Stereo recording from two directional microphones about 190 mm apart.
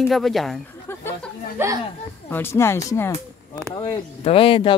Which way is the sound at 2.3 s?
10° left (ahead or behind).